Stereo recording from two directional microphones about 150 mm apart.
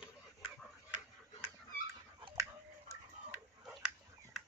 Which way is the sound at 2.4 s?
20° right (ahead or behind).